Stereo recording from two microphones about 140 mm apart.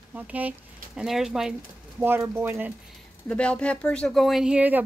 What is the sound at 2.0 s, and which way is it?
Speech, 15° right (ahead or behind).